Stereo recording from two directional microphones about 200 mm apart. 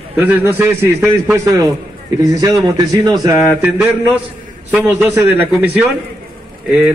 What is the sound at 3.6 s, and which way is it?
A man's voice, 5° right (ahead or behind).